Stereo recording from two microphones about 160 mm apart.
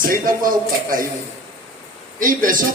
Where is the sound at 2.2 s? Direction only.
60° right (ahead or behind).